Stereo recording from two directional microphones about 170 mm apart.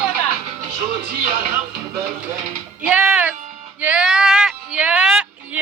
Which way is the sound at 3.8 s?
5° right (ahead or behind).